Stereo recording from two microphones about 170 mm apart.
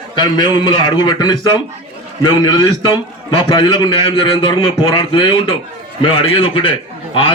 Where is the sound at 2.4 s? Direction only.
25° left (ahead or behind).